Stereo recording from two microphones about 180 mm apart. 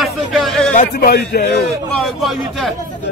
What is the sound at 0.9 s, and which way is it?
Speech, 60° left (ahead or behind).